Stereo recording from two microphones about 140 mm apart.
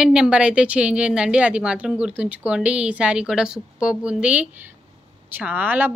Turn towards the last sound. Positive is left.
turn(degrees=-15)  # may be behind; listen again after turning